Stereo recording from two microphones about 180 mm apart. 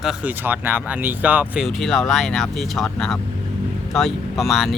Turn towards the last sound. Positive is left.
turn(degrees=0)  # may be behind; listen again after turning